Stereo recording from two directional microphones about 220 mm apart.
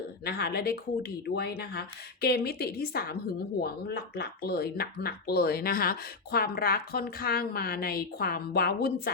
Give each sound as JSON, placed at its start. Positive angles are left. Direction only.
{"t": 0.3, "sound": "speech", "side_deg": 45}